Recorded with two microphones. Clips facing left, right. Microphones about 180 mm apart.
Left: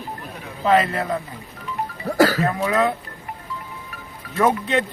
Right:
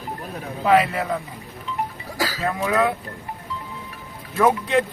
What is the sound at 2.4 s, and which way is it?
Speech, 5° right (ahead or behind).